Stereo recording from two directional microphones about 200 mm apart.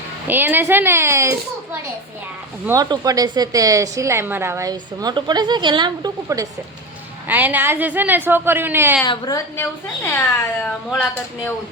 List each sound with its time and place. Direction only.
0.3 s a woman's voice: 10° right (ahead or behind)
2.6 s a woman's voice: 15° right (ahead or behind)
9.0 s a woman's voice: 20° left (ahead or behind)